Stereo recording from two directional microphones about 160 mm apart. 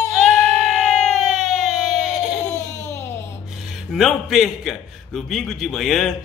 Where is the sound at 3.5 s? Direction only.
Centre (ahead or behind).